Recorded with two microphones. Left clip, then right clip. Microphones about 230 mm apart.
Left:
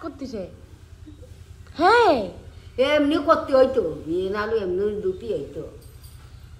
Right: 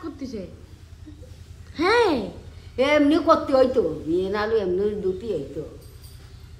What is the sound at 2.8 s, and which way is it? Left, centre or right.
A woman's voice, right.